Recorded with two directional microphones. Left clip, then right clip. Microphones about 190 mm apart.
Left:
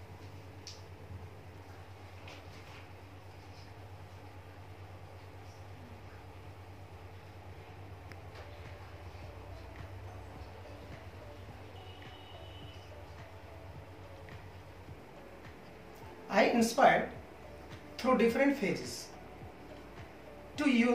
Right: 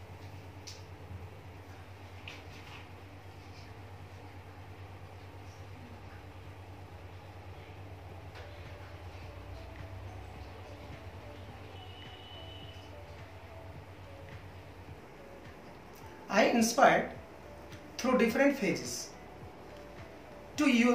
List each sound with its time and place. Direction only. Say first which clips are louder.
16.3 s speech: right 1 dB; 5° left (ahead or behind)
17.9 s speech: even; 5° left (ahead or behind)
20.5 s speech: right 2 dB; centre (ahead or behind)